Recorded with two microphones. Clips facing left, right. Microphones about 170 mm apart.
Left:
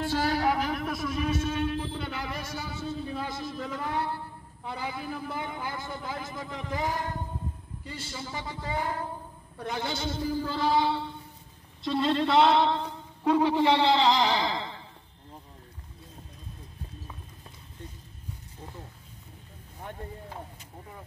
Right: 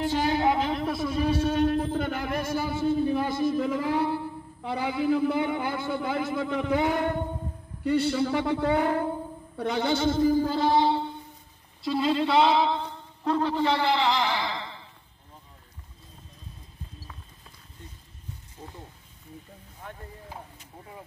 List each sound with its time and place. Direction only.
0.0 s a man's voice: 20° right (ahead or behind); by 10.8 s 45° right (ahead or behind)
10.8 s a sound: 20° right (ahead or behind)
11.8 s speech: centre (ahead or behind); by 14.6 s 20° left (ahead or behind)